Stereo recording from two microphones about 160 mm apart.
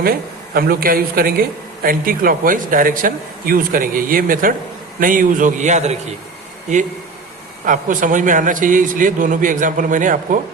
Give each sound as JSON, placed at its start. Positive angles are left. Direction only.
{"t": 0.0, "sound": "a man's voice", "side_deg": -65}
{"t": 7.6, "sound": "a man's voice", "side_deg": -55}